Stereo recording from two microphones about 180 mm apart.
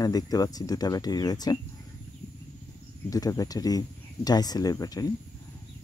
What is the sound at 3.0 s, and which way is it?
Speech, 20° left (ahead or behind).